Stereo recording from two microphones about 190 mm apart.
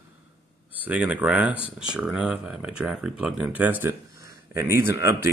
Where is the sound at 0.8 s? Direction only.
10° right (ahead or behind).